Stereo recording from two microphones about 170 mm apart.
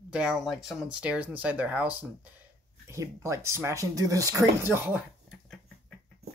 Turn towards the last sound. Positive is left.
turn(degrees=-15)  # may be behind; listen again after turning